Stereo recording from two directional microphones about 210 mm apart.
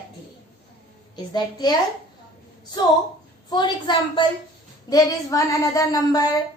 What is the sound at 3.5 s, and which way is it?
A woman's voice, 20° left (ahead or behind).